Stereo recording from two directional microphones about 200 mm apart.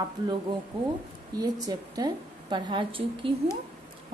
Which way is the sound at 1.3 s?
20° right (ahead or behind).